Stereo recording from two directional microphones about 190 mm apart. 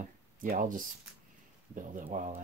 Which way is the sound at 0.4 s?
45° right (ahead or behind).